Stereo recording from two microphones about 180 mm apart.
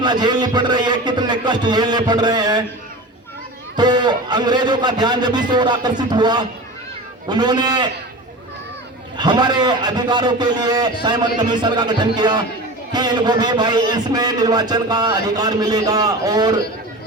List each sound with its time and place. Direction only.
0.0 s a man's voice: 25° right (ahead or behind)
3.8 s a man's voice: 25° right (ahead or behind)
9.1 s a man's voice: 25° right (ahead or behind)